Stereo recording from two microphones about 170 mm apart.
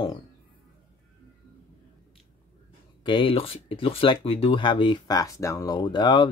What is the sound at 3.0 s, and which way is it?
Speech, 30° left (ahead or behind).